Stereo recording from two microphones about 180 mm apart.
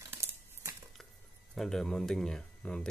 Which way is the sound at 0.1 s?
15° right (ahead or behind).